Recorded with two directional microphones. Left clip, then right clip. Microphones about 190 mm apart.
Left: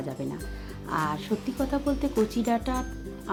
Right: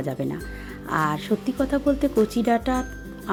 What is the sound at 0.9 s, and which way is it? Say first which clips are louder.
Speech: right 5 dB; 30° right (ahead or behind).